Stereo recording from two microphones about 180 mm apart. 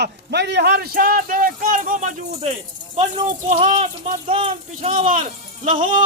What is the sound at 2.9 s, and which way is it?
Speech, 30° right (ahead or behind).